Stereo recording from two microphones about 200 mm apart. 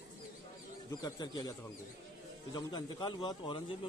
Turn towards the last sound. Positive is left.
turn(degrees=25)  # may be behind; listen again after turning